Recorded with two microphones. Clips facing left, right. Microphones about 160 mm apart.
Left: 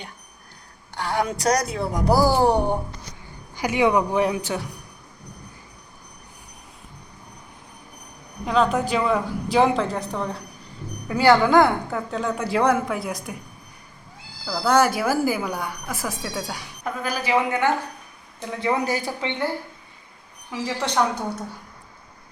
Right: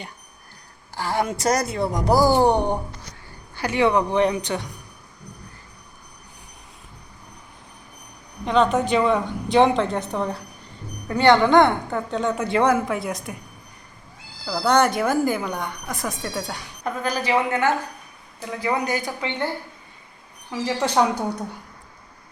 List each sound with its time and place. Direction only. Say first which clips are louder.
0.9 s a woman's voice: even; centre (ahead or behind)
8.4 s a woman's voice: right 2 dB; centre (ahead or behind)
14.5 s a woman's voice: even; centre (ahead or behind)
18.6 s a man's voice: left 1 dB; 25° left (ahead or behind)
20.7 s a woman's voice: right 3 dB; 10° right (ahead or behind)